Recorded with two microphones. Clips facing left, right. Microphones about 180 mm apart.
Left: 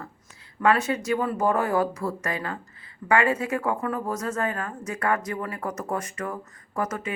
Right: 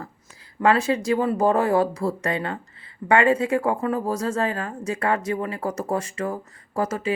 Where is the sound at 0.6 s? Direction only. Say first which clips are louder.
Right 3 dB; 30° right (ahead or behind).